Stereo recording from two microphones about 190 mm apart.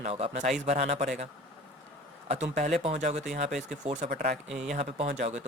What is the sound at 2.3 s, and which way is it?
Speech, 35° right (ahead or behind).